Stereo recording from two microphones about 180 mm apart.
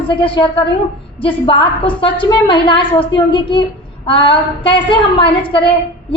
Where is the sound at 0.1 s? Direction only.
30° left (ahead or behind).